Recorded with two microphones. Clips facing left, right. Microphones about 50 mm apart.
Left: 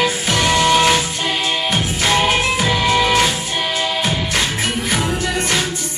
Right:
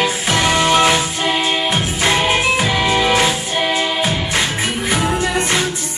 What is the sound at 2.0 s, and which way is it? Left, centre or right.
Music, centre.